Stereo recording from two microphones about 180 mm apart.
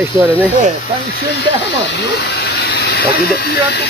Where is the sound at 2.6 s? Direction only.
65° left (ahead or behind).